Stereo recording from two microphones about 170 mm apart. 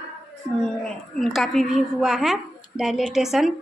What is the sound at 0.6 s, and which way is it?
A woman's voice, 5° left (ahead or behind).